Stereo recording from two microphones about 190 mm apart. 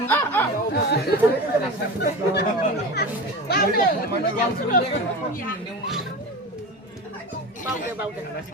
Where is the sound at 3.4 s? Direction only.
55° left (ahead or behind).